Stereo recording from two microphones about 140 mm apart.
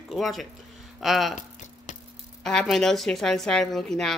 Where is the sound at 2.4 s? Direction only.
5° left (ahead or behind).